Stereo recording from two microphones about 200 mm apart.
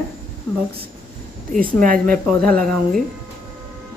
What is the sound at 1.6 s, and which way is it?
Speech, 45° right (ahead or behind).